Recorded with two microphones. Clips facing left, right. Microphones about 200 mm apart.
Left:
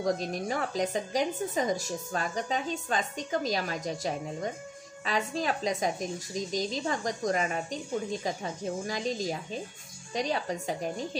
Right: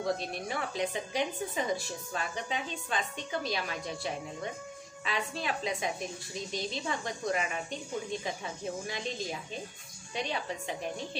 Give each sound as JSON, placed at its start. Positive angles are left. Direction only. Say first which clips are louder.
{"t": 0.0, "sound": "a woman's voice", "louder": "left 4 dB", "side_deg": 40}